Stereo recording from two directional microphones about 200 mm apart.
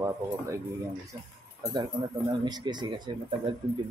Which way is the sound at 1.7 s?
20° right (ahead or behind).